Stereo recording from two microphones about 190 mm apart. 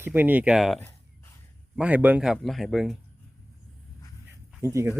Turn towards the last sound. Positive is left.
turn(degrees=-15)  # may be behind; listen again after turning